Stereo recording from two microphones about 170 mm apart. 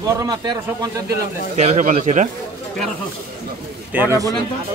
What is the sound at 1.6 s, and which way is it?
Speech, 45° right (ahead or behind).